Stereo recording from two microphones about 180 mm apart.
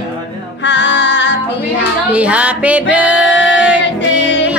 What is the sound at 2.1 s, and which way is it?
Child singing, 5° right (ahead or behind).